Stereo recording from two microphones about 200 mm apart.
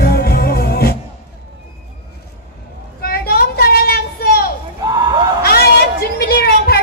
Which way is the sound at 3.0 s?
50° left (ahead or behind).